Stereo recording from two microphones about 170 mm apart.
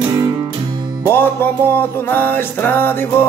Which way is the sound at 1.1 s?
10° left (ahead or behind).